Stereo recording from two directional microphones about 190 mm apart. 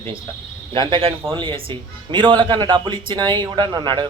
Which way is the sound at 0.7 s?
25° right (ahead or behind).